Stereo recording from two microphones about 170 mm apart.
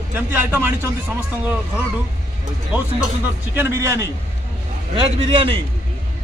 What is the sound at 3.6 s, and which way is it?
Speech, 15° right (ahead or behind).